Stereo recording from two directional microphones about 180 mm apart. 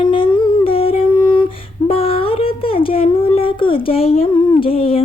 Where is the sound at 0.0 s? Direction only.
25° left (ahead or behind).